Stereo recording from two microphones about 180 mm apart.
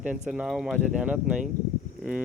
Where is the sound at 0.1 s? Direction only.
5° right (ahead or behind).